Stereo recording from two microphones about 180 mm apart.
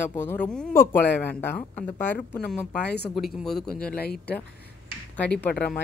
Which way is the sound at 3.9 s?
60° left (ahead or behind).